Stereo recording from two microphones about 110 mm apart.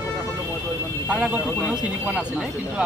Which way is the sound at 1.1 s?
10° right (ahead or behind).